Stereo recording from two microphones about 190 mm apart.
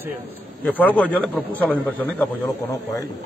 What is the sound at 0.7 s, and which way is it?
A man's voice, 10° left (ahead or behind).